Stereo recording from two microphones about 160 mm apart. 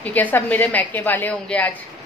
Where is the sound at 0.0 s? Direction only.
10° left (ahead or behind).